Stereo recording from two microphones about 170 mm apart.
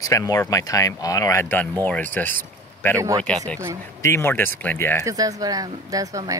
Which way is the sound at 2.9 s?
20° right (ahead or behind).